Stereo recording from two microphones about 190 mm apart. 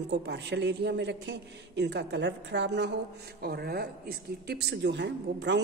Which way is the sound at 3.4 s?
55° right (ahead or behind).